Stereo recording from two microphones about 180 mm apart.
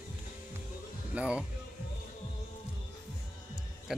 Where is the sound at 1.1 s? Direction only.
5° right (ahead or behind).